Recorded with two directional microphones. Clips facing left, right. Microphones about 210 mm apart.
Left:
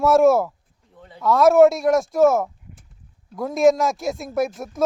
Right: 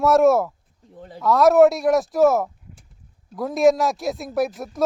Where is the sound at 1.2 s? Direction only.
Centre (ahead or behind).